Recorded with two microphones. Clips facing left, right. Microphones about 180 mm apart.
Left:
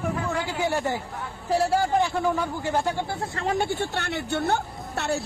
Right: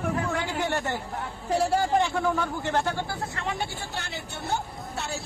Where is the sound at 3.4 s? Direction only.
45° left (ahead or behind); by 5.1 s 65° left (ahead or behind).